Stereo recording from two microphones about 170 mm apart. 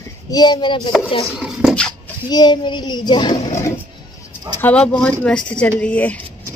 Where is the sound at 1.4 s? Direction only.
Centre (ahead or behind).